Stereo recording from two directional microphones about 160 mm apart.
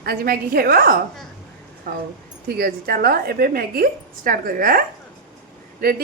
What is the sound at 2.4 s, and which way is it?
A woman's voice, 70° right (ahead or behind).